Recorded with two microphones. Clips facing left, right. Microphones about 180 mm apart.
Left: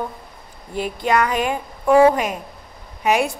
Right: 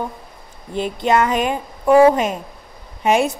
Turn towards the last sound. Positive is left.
turn(degrees=-25)  # may be behind; listen again after turning